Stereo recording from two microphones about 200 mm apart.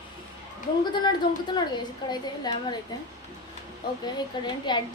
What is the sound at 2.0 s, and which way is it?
Speech, 20° left (ahead or behind).